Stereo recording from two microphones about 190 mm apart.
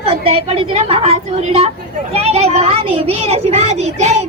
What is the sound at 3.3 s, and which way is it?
Child singing, 35° right (ahead or behind).